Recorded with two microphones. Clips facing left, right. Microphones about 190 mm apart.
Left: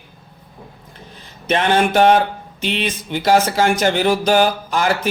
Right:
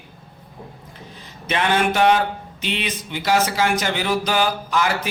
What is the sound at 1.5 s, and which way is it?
A man's voice, 45° left (ahead or behind).